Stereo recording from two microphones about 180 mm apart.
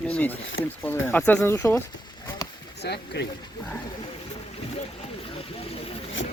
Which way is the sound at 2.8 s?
70° left (ahead or behind).